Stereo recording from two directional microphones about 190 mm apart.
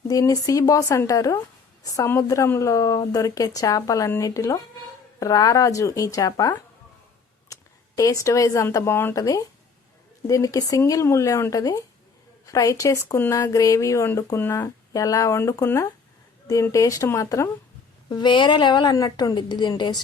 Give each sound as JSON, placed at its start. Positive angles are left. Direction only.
{"t": 0.1, "sound": "a woman's voice", "side_deg": 20}